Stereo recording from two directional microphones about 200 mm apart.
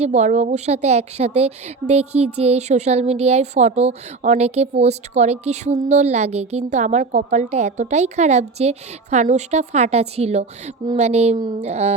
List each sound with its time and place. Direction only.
0.0 s a woman's voice: 35° right (ahead or behind)